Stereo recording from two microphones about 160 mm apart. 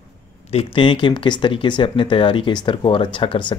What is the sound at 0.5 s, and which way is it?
Speech, 35° left (ahead or behind).